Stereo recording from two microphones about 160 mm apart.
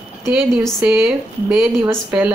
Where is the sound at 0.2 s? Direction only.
15° right (ahead or behind).